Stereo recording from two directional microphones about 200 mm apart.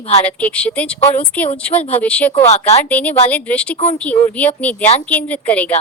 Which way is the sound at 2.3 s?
30° left (ahead or behind).